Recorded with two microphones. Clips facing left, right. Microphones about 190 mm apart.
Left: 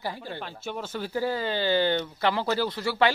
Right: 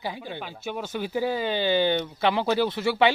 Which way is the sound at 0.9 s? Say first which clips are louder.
Right 2 dB; 20° right (ahead or behind).